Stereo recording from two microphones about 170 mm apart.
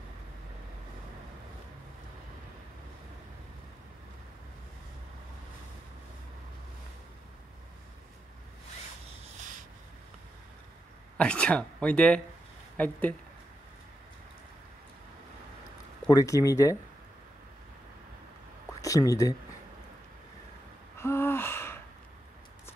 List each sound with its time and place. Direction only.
11.1 s speech: 5° left (ahead or behind)
16.1 s speech: 20° left (ahead or behind)
18.8 s speech: 20° left (ahead or behind)
21.0 s gasp: 15° left (ahead or behind)